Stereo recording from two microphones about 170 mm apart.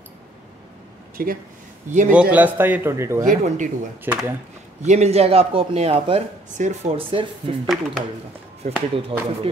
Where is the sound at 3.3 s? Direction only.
50° right (ahead or behind).